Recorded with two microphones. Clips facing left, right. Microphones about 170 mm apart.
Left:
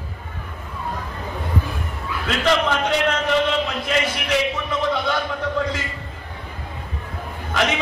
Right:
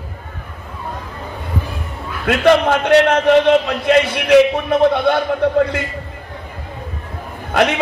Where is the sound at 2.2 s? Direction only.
55° right (ahead or behind).